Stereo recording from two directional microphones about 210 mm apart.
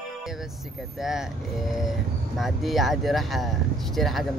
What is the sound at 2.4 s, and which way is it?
Speech, centre (ahead or behind).